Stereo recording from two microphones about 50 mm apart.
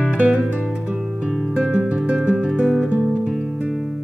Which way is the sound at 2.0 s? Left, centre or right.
Right.